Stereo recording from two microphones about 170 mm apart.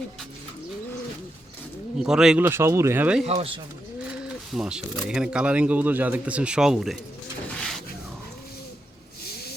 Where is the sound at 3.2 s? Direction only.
35° right (ahead or behind).